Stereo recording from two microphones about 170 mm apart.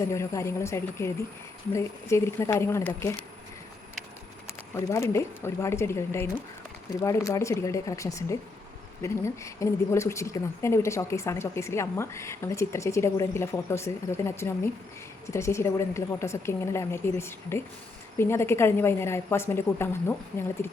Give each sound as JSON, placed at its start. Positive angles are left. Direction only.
{"t": 0.0, "sound": "speech", "side_deg": 15}
{"t": 4.7, "sound": "speech", "side_deg": 15}